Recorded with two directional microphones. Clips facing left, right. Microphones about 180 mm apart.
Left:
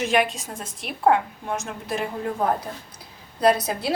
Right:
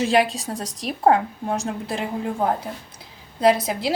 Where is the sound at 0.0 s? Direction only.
30° right (ahead or behind).